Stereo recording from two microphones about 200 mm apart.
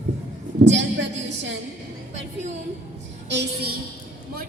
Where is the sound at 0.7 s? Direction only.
65° right (ahead or behind).